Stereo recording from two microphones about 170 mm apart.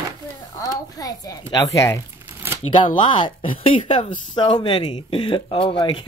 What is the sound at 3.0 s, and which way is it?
Speech, 30° left (ahead or behind).